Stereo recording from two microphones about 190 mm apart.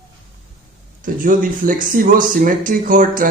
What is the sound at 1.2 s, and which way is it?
Speech, 45° right (ahead or behind).